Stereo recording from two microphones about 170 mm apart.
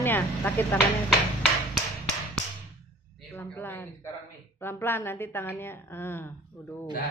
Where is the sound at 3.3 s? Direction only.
10° left (ahead or behind).